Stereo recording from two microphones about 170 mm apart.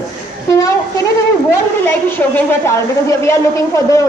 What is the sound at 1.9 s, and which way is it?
A woman's voice, 10° left (ahead or behind).